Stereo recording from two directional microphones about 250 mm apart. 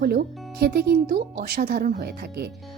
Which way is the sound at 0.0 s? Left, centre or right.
Right.